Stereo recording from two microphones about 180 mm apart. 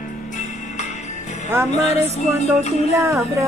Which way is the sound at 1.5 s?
15° right (ahead or behind).